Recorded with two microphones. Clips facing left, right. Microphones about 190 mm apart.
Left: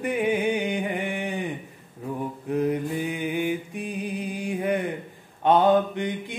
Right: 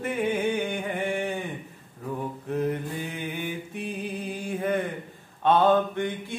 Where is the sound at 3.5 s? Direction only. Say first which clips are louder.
Left 4 dB; 15° left (ahead or behind).